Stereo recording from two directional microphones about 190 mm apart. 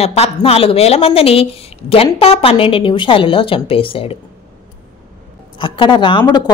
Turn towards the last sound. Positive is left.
turn(degrees=20)  # may be behind; listen again after turning